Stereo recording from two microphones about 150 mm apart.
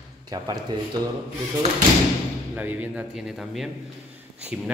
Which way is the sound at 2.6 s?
10° right (ahead or behind).